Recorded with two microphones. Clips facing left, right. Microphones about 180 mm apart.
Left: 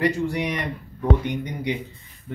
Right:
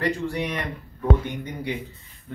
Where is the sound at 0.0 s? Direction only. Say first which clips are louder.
Left 3 dB; 15° left (ahead or behind).